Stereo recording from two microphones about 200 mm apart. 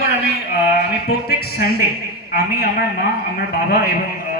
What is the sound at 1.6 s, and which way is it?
A man's voice, 50° left (ahead or behind).